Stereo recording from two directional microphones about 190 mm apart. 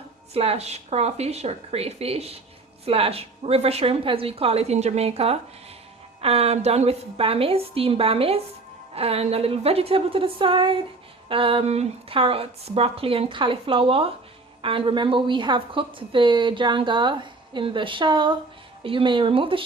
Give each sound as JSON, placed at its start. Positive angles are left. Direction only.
{"t": 0.3, "sound": "a woman's voice", "side_deg": -30}